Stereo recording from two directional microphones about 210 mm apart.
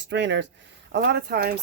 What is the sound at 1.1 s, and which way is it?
Speech, 45° right (ahead or behind).